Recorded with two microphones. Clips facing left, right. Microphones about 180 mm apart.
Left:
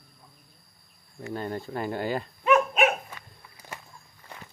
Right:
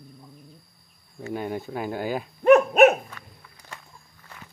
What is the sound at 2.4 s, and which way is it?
Dog, 45° right (ahead or behind).